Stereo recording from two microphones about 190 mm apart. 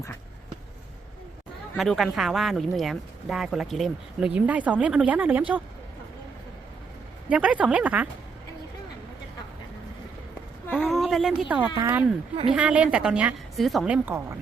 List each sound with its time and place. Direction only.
1.7 s speech: centre (ahead or behind)
7.3 s a woman's voice: 5° right (ahead or behind)
10.7 s a sound: centre (ahead or behind)
11.8 s a woman's voice: 15° right (ahead or behind)